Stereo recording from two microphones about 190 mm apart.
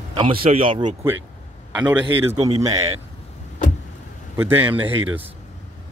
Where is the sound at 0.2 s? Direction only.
30° right (ahead or behind).